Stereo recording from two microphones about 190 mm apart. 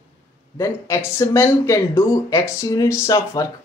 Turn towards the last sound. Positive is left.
turn(degrees=20)  # may be behind; listen again after turning